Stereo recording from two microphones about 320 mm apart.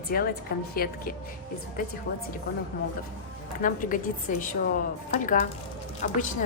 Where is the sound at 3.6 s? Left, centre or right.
Left.